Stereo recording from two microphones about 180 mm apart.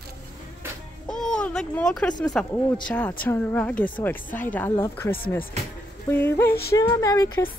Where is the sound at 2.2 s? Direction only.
5° left (ahead or behind).